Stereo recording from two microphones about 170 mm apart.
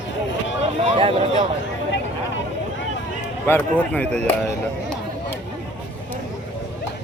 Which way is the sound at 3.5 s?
10° left (ahead or behind).